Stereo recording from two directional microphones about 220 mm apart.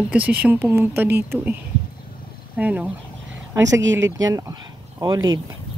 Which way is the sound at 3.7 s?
55° right (ahead or behind).